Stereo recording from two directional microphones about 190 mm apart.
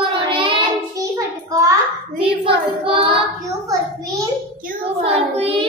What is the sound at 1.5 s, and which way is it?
Hands, 15° right (ahead or behind).